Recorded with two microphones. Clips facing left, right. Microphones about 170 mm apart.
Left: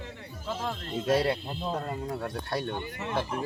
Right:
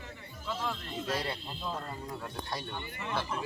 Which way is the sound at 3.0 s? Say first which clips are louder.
Left 4 dB; 45° left (ahead or behind).